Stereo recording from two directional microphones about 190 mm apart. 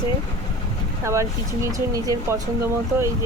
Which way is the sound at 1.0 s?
15° right (ahead or behind).